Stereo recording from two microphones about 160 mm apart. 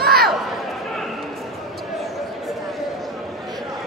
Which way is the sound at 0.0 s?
75° right (ahead or behind).